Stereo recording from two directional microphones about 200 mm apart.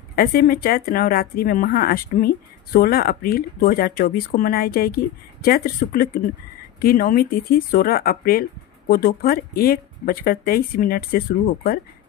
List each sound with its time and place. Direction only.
0.1 s speech: 50° left (ahead or behind)